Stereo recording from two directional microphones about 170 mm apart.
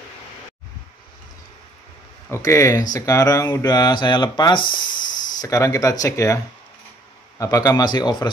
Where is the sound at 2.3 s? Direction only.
20° left (ahead or behind).